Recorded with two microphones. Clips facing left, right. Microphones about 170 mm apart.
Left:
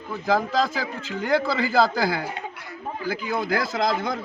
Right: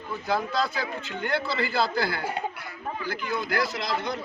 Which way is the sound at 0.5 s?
90° left.